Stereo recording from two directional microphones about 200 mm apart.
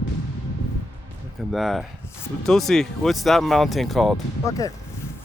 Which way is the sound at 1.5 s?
Centre (ahead or behind).